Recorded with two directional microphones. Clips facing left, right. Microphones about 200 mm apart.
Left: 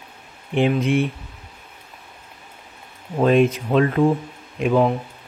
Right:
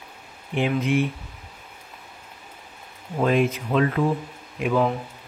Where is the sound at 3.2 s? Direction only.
35° left (ahead or behind).